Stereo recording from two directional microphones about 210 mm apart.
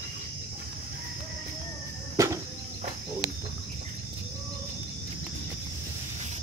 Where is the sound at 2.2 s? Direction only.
15° right (ahead or behind).